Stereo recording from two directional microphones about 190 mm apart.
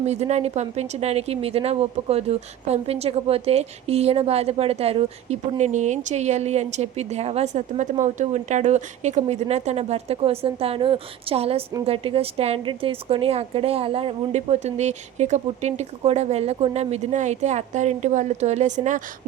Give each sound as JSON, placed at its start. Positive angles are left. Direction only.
{"t": 0.0, "sound": "speech", "side_deg": -35}